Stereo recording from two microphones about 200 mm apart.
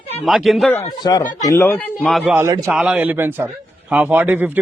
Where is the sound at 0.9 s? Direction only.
20° left (ahead or behind).